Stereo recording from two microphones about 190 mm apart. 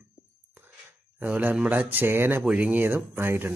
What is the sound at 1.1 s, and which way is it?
Speech, 5° right (ahead or behind).